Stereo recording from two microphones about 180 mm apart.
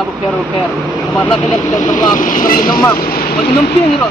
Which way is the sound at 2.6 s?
20° left (ahead or behind).